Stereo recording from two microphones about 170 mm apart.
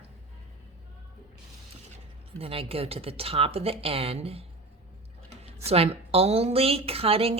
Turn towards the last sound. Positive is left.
turn(degrees=-35)  # may be behind; listen again after turning